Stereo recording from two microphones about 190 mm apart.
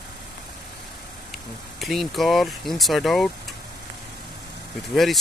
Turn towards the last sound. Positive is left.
turn(degrees=0)  # may be behind; listen again after turning